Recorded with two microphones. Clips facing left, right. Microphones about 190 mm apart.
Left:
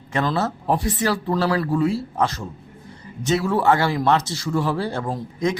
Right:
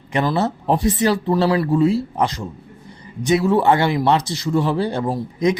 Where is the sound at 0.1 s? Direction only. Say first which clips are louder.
Right 3 dB; 15° right (ahead or behind).